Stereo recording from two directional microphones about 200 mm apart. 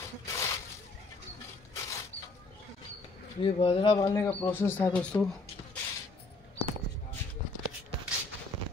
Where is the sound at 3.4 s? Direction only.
25° left (ahead or behind).